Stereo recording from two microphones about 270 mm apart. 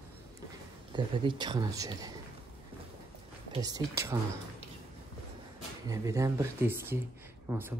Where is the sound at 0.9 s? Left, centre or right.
Centre.